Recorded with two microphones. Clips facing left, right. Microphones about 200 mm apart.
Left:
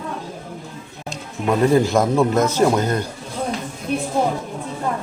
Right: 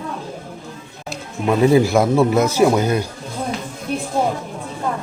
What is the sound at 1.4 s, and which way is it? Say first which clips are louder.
Speech: right 2 dB; 5° right (ahead or behind).